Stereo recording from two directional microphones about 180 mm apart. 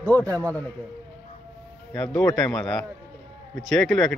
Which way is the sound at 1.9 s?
5° left (ahead or behind).